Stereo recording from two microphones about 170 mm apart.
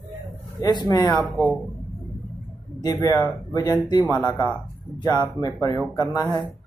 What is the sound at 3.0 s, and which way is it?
Speech, 20° left (ahead or behind).